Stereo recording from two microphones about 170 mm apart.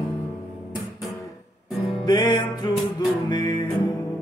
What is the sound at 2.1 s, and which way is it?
Music, 25° left (ahead or behind).